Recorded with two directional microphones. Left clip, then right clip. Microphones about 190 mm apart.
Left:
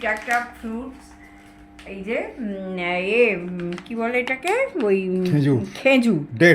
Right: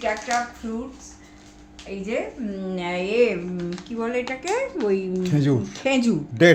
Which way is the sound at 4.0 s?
35° left (ahead or behind).